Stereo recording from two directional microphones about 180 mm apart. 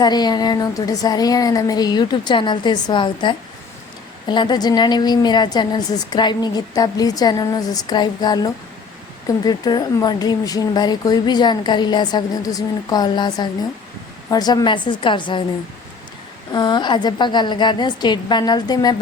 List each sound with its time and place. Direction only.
0.0 s speech: 25° left (ahead or behind)
16.5 s speech: 25° left (ahead or behind)